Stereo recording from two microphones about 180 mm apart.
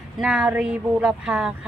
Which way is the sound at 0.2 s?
5° right (ahead or behind).